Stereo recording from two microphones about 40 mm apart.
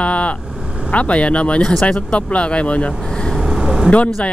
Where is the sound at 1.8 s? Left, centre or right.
Left.